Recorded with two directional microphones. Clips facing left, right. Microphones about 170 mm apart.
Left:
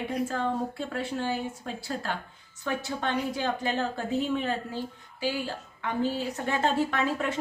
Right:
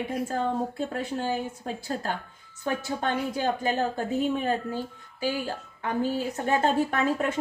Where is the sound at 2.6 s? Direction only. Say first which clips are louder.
Right 2 dB; 45° right (ahead or behind).